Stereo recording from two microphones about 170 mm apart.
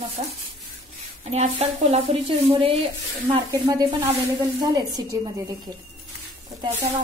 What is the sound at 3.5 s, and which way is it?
Speech, 20° right (ahead or behind).